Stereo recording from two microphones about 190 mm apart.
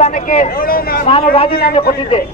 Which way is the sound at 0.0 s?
40° left (ahead or behind).